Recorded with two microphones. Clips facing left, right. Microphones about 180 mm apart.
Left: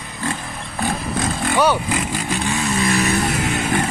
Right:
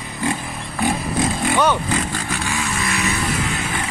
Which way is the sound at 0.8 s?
Centre (ahead or behind).